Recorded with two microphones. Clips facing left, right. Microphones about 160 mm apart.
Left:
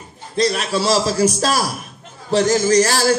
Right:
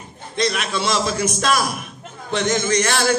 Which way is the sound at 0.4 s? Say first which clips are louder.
Left 4 dB; 35° left (ahead or behind).